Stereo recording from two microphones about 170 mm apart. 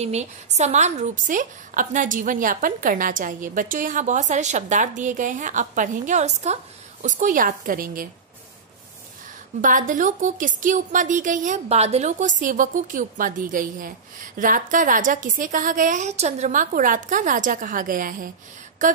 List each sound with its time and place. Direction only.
0.0 s a woman's voice: 40° right (ahead or behind); by 8.1 s 55° right (ahead or behind)
9.6 s a woman's voice: 50° right (ahead or behind)